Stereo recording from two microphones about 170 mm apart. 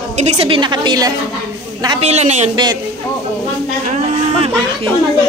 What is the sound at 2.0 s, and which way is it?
Speech, 40° right (ahead or behind).